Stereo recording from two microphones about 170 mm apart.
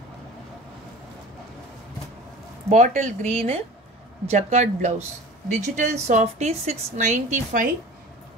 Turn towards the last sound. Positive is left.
turn(degrees=-50)  # may be behind; listen again after turning